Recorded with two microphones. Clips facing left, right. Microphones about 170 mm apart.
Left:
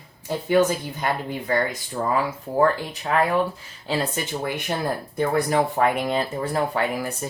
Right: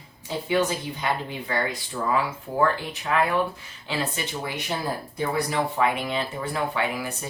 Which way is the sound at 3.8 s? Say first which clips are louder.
Left 4 dB; 45° left (ahead or behind).